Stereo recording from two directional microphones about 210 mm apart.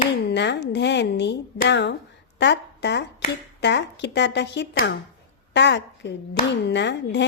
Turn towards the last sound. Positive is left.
turn(degrees=55)  # may be behind; listen again after turning